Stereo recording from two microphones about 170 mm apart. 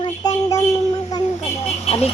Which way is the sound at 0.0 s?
25° left (ahead or behind).